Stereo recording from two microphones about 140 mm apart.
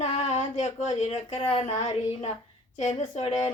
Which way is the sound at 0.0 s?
55° left (ahead or behind).